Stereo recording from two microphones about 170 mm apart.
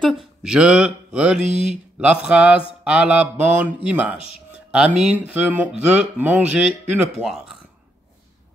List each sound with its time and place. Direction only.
0.0 s speech: centre (ahead or behind)